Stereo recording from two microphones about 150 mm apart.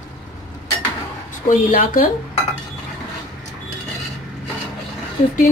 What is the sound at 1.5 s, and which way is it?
Speech, 60° left (ahead or behind).